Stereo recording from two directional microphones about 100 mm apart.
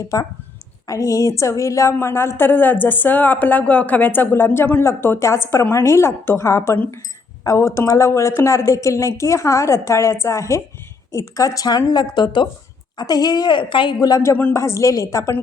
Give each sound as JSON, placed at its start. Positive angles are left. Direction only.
{"t": 0.1, "sound": "a woman's voice", "side_deg": 35}
{"t": 14.0, "sound": "a woman's voice", "side_deg": 35}